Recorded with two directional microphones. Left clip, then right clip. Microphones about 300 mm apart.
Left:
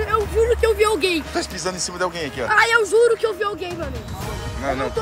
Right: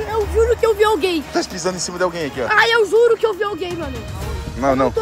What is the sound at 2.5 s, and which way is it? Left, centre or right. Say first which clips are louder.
Speech: right 2 dB; right.